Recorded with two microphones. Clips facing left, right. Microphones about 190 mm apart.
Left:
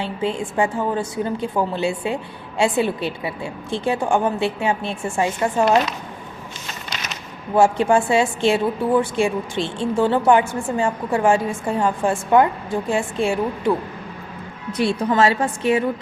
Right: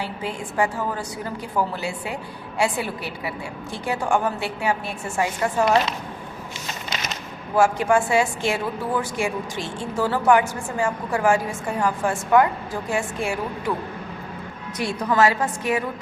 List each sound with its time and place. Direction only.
0.0 s a woman's voice: 25° left (ahead or behind)
7.5 s a woman's voice: 25° left (ahead or behind)
14.7 s a woman's voice: 30° left (ahead or behind)